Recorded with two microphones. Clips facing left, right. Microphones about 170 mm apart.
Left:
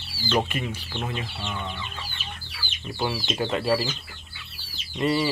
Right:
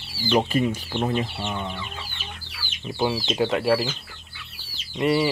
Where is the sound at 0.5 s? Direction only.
30° right (ahead or behind).